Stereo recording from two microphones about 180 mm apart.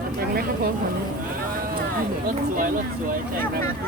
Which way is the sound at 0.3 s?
55° right (ahead or behind).